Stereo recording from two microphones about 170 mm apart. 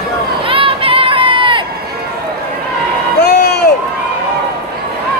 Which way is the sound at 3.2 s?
70° left (ahead or behind).